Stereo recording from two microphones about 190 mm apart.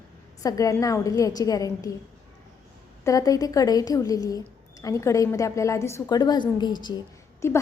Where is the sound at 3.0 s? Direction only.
15° left (ahead or behind).